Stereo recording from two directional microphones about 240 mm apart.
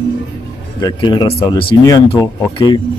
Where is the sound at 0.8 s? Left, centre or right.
Centre.